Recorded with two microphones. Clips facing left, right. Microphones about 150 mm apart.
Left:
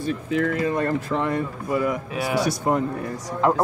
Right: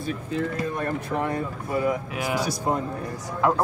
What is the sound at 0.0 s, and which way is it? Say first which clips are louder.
Speech: left 4 dB; 90° left.